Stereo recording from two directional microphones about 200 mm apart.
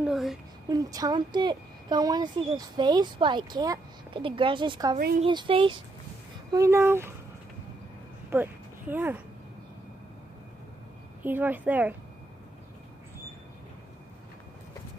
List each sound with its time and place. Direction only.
0.0 s a sound: centre (ahead or behind)
0.7 s a woman's voice: 20° right (ahead or behind)
6.5 s a woman's voice: 15° right (ahead or behind)
8.3 s speech: 10° right (ahead or behind)
11.2 s a woman's voice: 10° right (ahead or behind)